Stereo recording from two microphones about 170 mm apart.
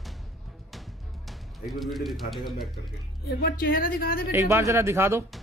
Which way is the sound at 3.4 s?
60° left (ahead or behind).